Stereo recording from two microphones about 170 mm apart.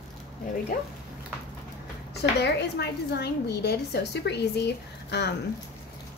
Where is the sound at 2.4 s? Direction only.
80° left.